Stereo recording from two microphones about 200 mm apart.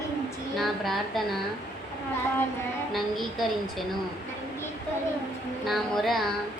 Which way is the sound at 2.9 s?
Centre (ahead or behind).